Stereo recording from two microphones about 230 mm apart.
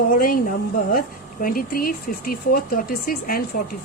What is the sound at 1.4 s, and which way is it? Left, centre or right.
Speech, left.